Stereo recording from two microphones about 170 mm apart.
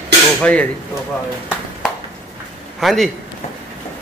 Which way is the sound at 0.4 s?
5° left (ahead or behind).